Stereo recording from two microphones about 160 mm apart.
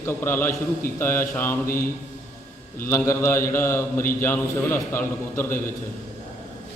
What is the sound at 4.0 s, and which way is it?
Speech, 60° left (ahead or behind).